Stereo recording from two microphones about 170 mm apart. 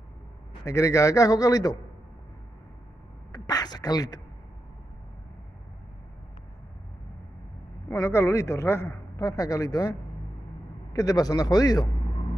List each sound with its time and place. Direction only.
0.7 s a man's voice: 20° left (ahead or behind)
3.3 s a sound: 25° left (ahead or behind)
7.9 s a man's voice: 15° left (ahead or behind)